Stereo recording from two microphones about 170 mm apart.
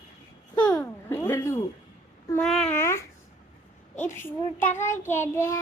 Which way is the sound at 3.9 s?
45° left (ahead or behind).